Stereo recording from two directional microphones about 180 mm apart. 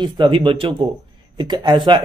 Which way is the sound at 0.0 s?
25° right (ahead or behind).